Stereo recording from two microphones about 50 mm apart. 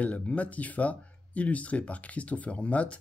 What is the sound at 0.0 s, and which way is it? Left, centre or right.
Speech, left.